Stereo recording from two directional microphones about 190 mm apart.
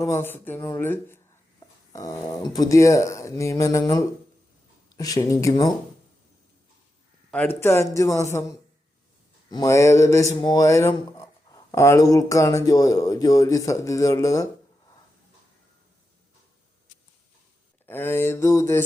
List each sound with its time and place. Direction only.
0.0 s speech: 15° left (ahead or behind)
7.3 s speech: 10° left (ahead or behind)
17.8 s speech: 10° left (ahead or behind)